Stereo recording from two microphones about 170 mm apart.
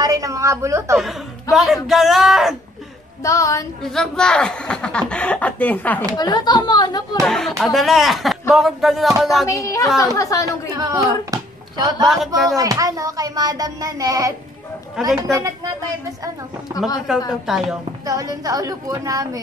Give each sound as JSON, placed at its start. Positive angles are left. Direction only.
{"t": 0.0, "sound": "a woman's voice", "side_deg": -20}
{"t": 0.9, "sound": "speech", "side_deg": 0}
{"t": 3.2, "sound": "speech", "side_deg": 20}
{"t": 3.8, "sound": "speech", "side_deg": 0}
{"t": 6.1, "sound": "speech", "side_deg": 25}
{"t": 7.2, "sound": "speech", "side_deg": 0}
{"t": 9.5, "sound": "speech", "side_deg": 20}
{"t": 10.8, "sound": "speech", "side_deg": -20}
{"t": 15.0, "sound": "speech", "side_deg": 0}
{"t": 17.1, "sound": "speech", "side_deg": -5}
{"t": 18.0, "sound": "speech", "side_deg": -20}